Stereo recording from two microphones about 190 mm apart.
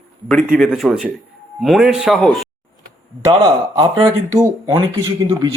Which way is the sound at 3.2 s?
20° right (ahead or behind).